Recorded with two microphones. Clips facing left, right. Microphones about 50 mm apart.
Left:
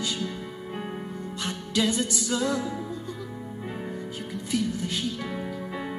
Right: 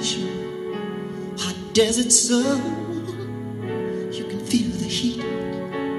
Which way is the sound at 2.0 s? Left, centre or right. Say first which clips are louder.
Right 7 dB; right.